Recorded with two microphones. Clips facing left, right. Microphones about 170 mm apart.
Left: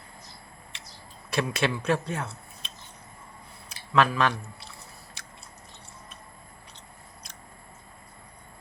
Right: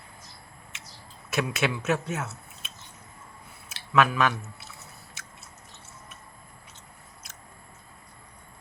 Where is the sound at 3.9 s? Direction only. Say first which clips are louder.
Even; 5° right (ahead or behind).